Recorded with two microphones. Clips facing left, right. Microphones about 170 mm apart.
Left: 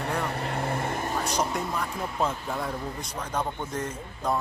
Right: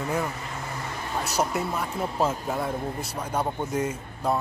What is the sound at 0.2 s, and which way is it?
Vehicle, 60° left (ahead or behind).